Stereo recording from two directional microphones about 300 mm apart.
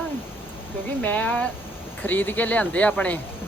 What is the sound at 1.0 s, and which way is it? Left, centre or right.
A woman's voice, centre.